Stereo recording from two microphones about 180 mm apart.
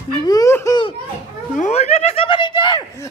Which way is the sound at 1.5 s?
40° left (ahead or behind).